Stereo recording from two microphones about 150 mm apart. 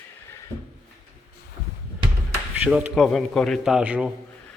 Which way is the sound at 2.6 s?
10° right (ahead or behind).